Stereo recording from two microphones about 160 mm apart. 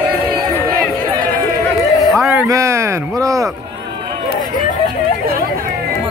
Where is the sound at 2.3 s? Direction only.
20° right (ahead or behind).